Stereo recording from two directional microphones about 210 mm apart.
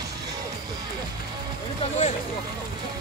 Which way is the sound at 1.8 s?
30° left (ahead or behind).